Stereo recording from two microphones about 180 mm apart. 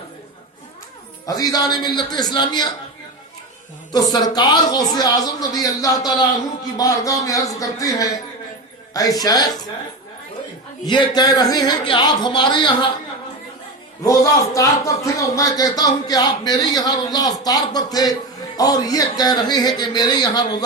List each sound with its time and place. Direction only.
1.3 s a man's voice: 20° left (ahead or behind)
3.9 s a man's voice: 20° left (ahead or behind)
10.8 s a man's voice: 25° left (ahead or behind)
14.5 s a man's voice: 20° left (ahead or behind)